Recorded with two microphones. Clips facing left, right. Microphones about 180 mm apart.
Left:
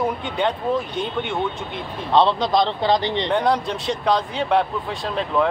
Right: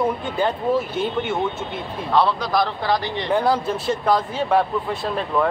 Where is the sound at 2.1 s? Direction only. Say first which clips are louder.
Left 2 dB; 20° left (ahead or behind).